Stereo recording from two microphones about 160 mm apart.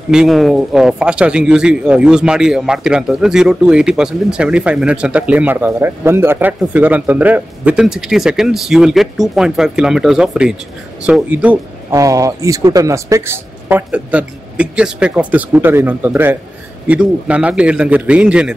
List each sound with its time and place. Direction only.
0.1 s speech: 5° right (ahead or behind)
11.9 s speech: 20° right (ahead or behind)